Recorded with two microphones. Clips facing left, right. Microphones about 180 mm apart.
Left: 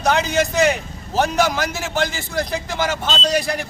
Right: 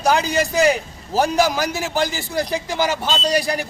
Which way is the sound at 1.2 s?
35° right (ahead or behind).